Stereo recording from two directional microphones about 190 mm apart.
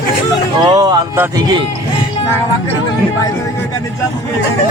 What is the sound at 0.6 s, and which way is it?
Speech, 20° right (ahead or behind).